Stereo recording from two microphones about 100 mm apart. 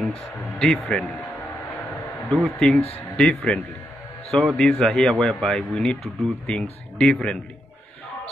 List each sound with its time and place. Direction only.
0.0 s speech: 5° left (ahead or behind)
1.0 s speech: 20° left (ahead or behind)
2.2 s speech: 10° left (ahead or behind)